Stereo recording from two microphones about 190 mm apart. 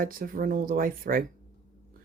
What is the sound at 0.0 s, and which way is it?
Speech, 50° right (ahead or behind).